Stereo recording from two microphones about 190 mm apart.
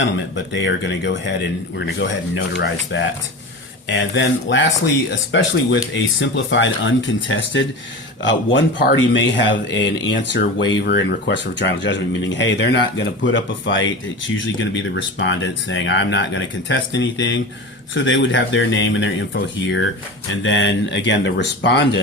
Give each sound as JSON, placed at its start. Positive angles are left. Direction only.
{"t": 0.0, "sound": "speech", "side_deg": 75}